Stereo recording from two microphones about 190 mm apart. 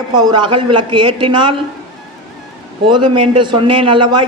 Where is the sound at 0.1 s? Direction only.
25° right (ahead or behind).